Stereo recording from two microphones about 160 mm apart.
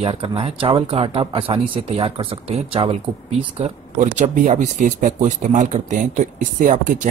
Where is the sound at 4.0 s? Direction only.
50° right (ahead or behind).